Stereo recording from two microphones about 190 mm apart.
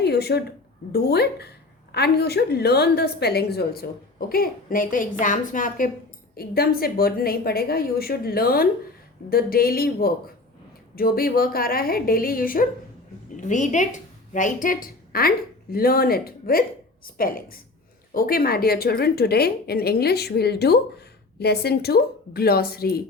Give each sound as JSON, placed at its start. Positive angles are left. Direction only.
{"t": 0.0, "sound": "a woman's voice", "side_deg": 60}